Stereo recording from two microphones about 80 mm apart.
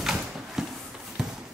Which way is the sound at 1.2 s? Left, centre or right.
Centre.